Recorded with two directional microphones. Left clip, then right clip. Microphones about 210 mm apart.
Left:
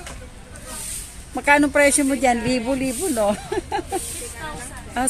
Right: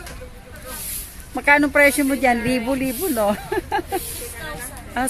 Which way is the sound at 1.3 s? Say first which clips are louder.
Right 1 dB; centre (ahead or behind).